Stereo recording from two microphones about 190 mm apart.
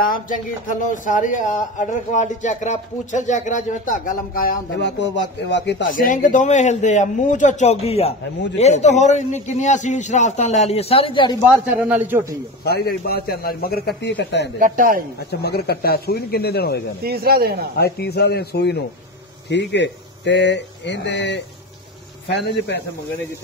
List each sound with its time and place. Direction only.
0.0 s speech: 45° left (ahead or behind); by 5.9 s 65° left (ahead or behind)
5.9 s a man's voice: 45° left (ahead or behind); by 11.3 s 25° left (ahead or behind)
11.7 s a man's voice: 10° right (ahead or behind)
12.6 s a man's voice: 55° left (ahead or behind)
14.6 s speech: 45° right (ahead or behind)
15.4 s a man's voice: 55° left (ahead or behind)
17.0 s speech: 55° right (ahead or behind)
17.7 s a man's voice: 55° left (ahead or behind)